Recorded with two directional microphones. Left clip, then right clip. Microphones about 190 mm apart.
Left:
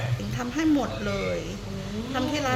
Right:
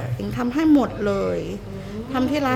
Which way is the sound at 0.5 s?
75° right (ahead or behind).